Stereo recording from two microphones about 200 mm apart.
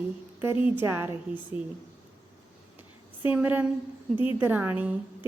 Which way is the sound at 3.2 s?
10° right (ahead or behind).